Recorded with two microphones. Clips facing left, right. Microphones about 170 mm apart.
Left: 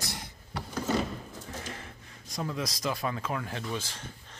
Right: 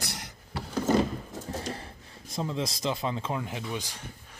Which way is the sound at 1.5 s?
35° right (ahead or behind).